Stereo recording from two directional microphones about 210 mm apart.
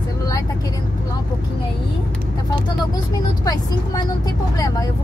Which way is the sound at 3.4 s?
20° left (ahead or behind).